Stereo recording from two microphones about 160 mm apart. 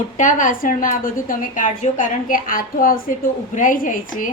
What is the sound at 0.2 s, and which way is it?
A woman's voice, 55° left (ahead or behind).